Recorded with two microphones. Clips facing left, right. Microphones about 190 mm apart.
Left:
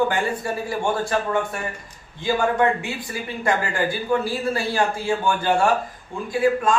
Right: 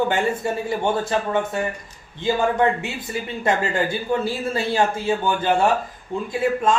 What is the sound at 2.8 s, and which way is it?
A man's voice, 25° right (ahead or behind).